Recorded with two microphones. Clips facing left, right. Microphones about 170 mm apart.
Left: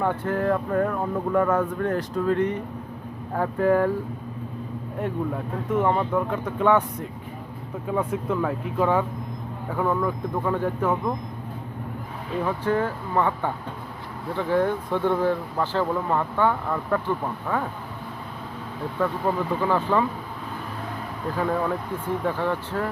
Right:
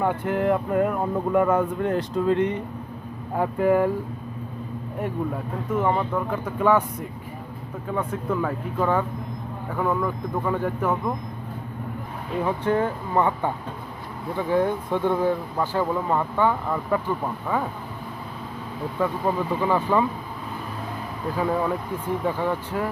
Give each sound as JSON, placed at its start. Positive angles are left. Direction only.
{"t": 0.0, "sound": "speech", "side_deg": -15}
{"t": 4.9, "sound": "speech", "side_deg": -5}
{"t": 7.9, "sound": "speech", "side_deg": 5}
{"t": 12.5, "sound": "speech", "side_deg": -20}
{"t": 18.9, "sound": "speech", "side_deg": -10}
{"t": 21.3, "sound": "speech", "side_deg": -10}